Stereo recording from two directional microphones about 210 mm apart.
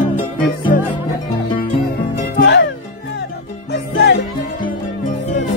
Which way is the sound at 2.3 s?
55° left (ahead or behind).